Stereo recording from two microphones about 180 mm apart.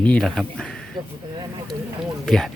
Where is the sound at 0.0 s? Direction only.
5° left (ahead or behind).